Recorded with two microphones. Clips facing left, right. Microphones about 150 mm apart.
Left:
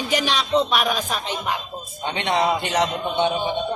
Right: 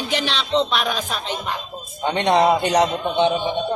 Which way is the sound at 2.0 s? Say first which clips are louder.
Right 5 dB; 40° right (ahead or behind).